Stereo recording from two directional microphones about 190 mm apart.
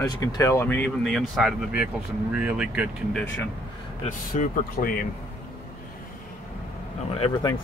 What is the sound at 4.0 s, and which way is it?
Speech, 45° left (ahead or behind).